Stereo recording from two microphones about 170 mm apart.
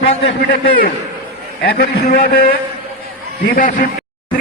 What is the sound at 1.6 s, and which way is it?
A man's voice, 65° left (ahead or behind).